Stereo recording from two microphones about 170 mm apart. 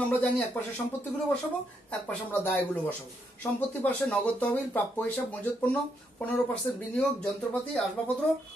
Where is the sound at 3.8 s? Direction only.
10° left (ahead or behind).